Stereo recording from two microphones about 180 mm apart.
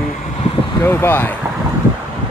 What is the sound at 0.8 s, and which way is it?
Speech, 10° left (ahead or behind).